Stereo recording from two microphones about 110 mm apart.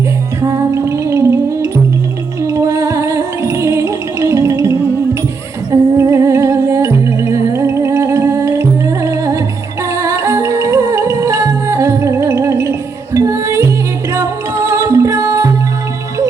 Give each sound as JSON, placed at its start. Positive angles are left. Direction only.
{"t": 0.4, "sound": "music", "side_deg": -25}